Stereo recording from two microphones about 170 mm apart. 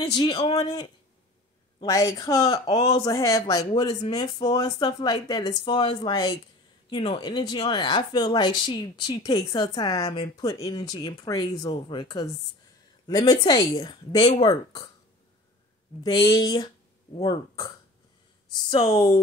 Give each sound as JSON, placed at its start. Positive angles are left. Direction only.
{"t": 0.2, "sound": "speech", "side_deg": 25}
{"t": 16.0, "sound": "speech", "side_deg": 25}
{"t": 18.7, "sound": "speech", "side_deg": 35}